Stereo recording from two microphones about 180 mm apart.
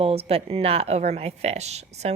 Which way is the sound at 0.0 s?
35° right (ahead or behind).